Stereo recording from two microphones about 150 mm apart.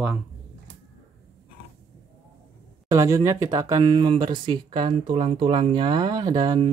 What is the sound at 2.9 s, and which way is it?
Speech, 20° right (ahead or behind).